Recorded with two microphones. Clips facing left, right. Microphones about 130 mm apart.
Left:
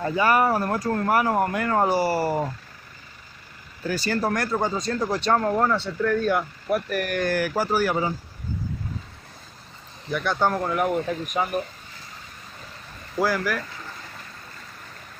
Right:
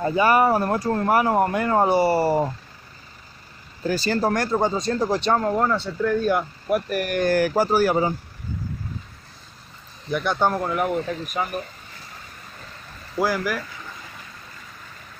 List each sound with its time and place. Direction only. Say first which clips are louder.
0.0 s speech: right 2 dB; 20° right (ahead or behind)
3.8 s speech: right 3 dB; 30° right (ahead or behind)
5.3 s speech: left 2 dB; 5° right (ahead or behind); by 7.3 s 20° right (ahead or behind)
7.3 s speech: right 5 dB; 35° right (ahead or behind)
10.1 s speech: right 1 dB; 15° right (ahead or behind)
10.6 s speech: even; 5° right (ahead or behind)
10.9 s speech: even; 10° left (ahead or behind)
13.2 s speech: right 1 dB; 15° right (ahead or behind)